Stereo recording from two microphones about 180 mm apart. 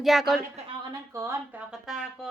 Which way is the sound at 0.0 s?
Centre (ahead or behind).